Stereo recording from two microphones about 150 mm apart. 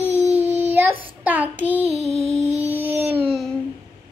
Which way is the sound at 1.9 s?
45° right (ahead or behind).